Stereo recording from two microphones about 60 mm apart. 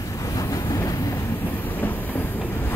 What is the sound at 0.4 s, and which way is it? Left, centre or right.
Train, left.